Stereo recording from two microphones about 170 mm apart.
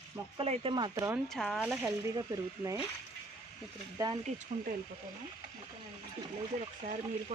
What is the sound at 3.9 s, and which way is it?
Speech, 25° right (ahead or behind).